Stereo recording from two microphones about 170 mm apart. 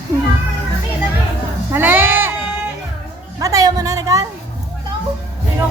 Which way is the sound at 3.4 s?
20° right (ahead or behind).